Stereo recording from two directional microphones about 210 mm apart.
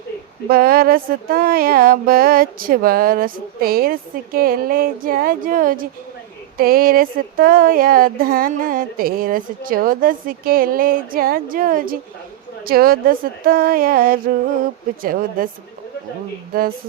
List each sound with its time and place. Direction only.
0.4 s speech: 45° right (ahead or behind)
16.5 s speech: 45° right (ahead or behind)